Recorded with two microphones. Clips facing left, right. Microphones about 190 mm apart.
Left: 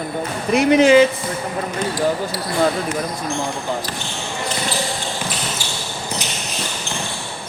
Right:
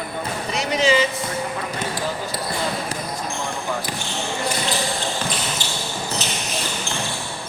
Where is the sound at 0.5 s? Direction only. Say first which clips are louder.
Left 9 dB; 55° left (ahead or behind).